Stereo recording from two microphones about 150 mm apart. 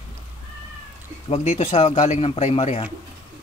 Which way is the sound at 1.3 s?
45° left (ahead or behind).